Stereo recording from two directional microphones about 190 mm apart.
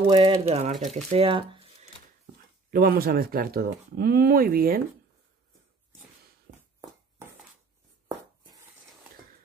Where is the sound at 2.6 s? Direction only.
50° right (ahead or behind).